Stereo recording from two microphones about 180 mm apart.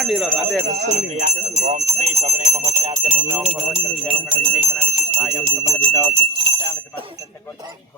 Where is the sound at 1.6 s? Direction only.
40° right (ahead or behind).